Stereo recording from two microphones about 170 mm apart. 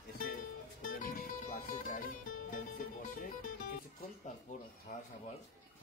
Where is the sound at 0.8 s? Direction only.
55° left (ahead or behind).